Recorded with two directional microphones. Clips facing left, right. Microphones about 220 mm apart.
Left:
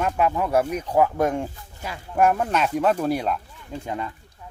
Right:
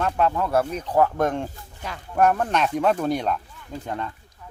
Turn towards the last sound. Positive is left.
turn(degrees=5)  # may be behind; listen again after turning